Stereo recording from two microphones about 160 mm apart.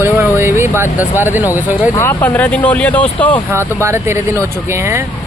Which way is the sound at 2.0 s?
10° left (ahead or behind).